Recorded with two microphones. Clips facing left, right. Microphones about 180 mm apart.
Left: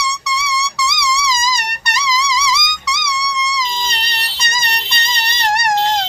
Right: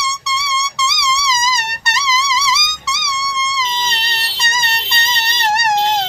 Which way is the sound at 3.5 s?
25° right (ahead or behind).